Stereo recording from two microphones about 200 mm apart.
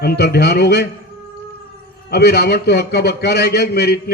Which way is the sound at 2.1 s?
55° left (ahead or behind).